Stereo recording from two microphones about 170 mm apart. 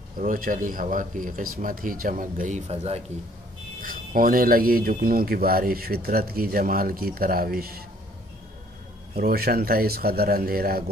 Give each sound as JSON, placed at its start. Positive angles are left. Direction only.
{"t": 0.2, "sound": "speech", "side_deg": -55}
{"t": 3.8, "sound": "speech", "side_deg": -55}
{"t": 9.1, "sound": "speech", "side_deg": -65}